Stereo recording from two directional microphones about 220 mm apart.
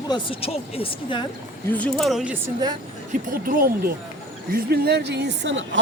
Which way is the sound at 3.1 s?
40° right (ahead or behind).